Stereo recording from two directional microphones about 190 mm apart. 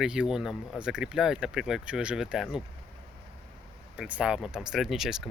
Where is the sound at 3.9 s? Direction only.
5° right (ahead or behind).